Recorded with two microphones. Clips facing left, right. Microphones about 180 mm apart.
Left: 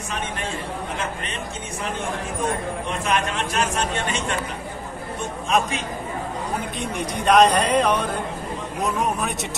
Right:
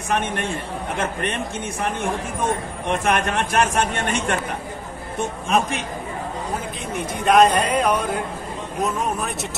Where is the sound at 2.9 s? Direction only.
60° right (ahead or behind).